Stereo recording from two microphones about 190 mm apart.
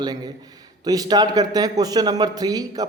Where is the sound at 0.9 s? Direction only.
20° right (ahead or behind).